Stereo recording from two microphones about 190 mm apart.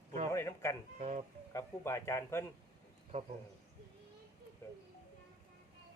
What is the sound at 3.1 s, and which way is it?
Speech, 35° right (ahead or behind).